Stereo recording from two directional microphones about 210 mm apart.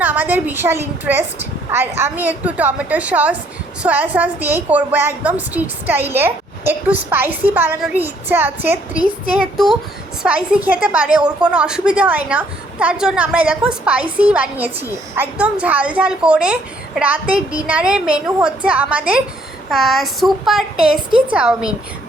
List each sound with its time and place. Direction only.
0.0 s a woman's voice: 10° right (ahead or behind)
9.6 s a woman's voice: centre (ahead or behind)